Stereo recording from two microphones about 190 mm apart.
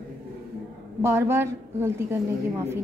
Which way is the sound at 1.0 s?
15° right (ahead or behind).